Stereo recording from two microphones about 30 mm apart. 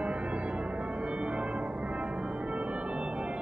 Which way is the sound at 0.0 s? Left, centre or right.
Right.